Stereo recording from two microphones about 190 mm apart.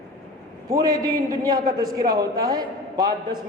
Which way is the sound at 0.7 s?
20° right (ahead or behind).